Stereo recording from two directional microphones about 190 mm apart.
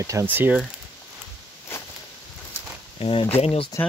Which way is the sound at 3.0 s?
30° left (ahead or behind).